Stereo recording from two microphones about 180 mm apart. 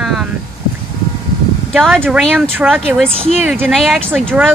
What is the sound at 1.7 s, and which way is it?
Speech, centre (ahead or behind).